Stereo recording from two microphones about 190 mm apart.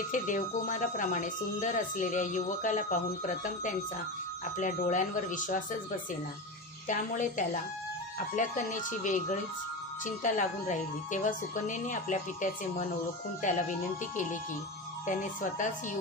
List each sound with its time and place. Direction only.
0.1 s speech: 40° left (ahead or behind)
4.6 s speech: 45° left (ahead or behind)
6.9 s speech: 40° left (ahead or behind)
15.0 s speech: 40° left (ahead or behind)